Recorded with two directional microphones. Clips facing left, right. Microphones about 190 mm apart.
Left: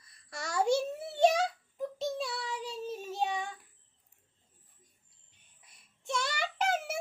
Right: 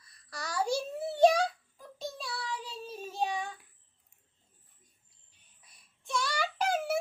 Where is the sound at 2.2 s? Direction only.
20° left (ahead or behind).